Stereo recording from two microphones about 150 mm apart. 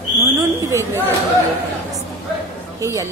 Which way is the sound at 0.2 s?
20° right (ahead or behind).